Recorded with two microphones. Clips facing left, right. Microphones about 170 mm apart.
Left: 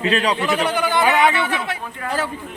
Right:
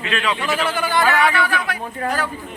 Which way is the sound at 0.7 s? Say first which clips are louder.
Even; 20° left (ahead or behind).